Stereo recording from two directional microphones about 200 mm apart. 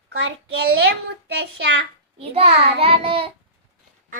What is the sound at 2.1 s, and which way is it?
A child's voice, 30° right (ahead or behind).